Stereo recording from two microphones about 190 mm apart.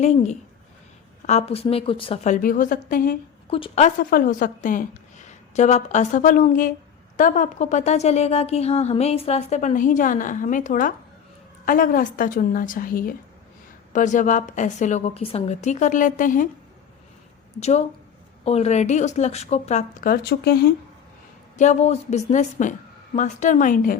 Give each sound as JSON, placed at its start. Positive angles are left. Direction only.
{"t": 0.0, "sound": "a woman's voice", "side_deg": 35}
{"t": 3.5, "sound": "a woman's voice", "side_deg": 35}
{"t": 17.6, "sound": "a woman's voice", "side_deg": 35}
{"t": 21.6, "sound": "a woman's voice", "side_deg": 35}